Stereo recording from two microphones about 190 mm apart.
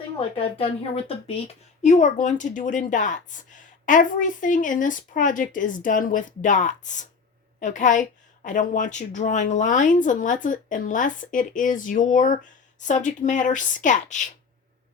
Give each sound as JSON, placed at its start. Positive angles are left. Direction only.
{"t": 0.2, "sound": "a woman's voice", "side_deg": 30}